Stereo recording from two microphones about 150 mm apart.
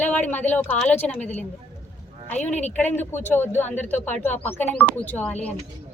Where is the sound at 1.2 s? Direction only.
50° left (ahead or behind).